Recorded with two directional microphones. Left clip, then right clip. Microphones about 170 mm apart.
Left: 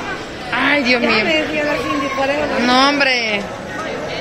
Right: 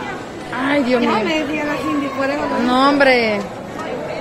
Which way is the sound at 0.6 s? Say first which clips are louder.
Left 2 dB; 15° right (ahead or behind).